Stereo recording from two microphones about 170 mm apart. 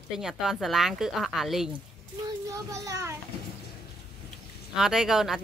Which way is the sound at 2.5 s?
20° right (ahead or behind).